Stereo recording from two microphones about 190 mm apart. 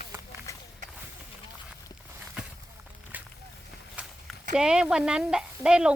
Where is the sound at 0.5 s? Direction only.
15° left (ahead or behind).